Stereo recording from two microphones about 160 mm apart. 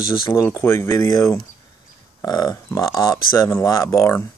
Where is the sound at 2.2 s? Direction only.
25° left (ahead or behind).